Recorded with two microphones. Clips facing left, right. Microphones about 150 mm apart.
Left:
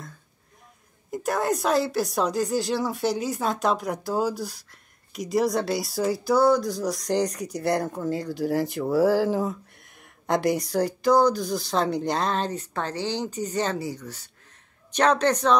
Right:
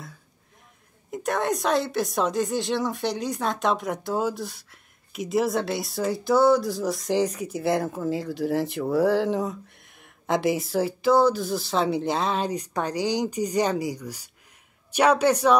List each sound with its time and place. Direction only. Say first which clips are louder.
1.1 s speech: left 1 dB; centre (ahead or behind)